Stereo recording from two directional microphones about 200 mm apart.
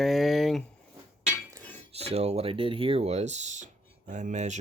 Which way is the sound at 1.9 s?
30° right (ahead or behind).